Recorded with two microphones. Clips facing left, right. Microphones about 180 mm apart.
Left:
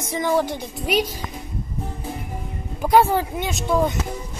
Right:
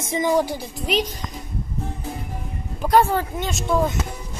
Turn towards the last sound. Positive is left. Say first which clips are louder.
# left 1 dB
turn(degrees=0)  # may be behind; listen again after turning